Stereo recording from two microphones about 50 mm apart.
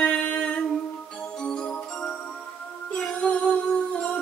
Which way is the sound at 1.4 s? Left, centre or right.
Centre.